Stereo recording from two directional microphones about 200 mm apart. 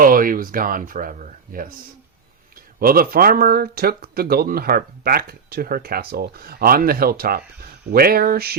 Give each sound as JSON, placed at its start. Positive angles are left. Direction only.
{"t": 0.0, "sound": "speech", "side_deg": -45}